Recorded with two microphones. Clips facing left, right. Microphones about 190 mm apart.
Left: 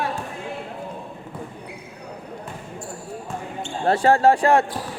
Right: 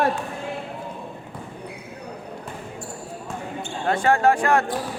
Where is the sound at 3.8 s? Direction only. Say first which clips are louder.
Left 3 dB; 35° left (ahead or behind).